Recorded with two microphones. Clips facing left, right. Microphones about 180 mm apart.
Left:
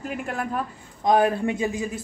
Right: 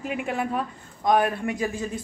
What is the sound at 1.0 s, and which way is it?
Speech, 25° left (ahead or behind).